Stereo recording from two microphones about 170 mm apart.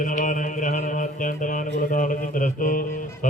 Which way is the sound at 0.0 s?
50° left (ahead or behind).